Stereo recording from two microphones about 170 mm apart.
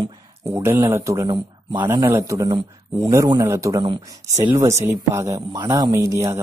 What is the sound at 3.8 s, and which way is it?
Speech, 30° right (ahead or behind).